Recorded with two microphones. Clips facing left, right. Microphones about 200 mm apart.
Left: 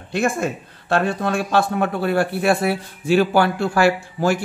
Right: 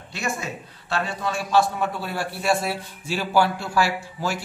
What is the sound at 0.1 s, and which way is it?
Speech, 55° left (ahead or behind).